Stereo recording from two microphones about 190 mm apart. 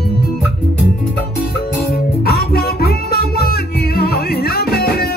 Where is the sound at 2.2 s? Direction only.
55° left (ahead or behind).